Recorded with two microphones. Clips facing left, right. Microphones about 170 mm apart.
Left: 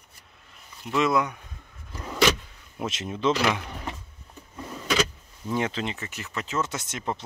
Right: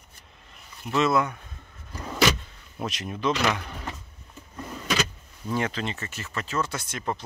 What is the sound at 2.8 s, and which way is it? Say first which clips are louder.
Speech: left 2 dB; 25° left (ahead or behind).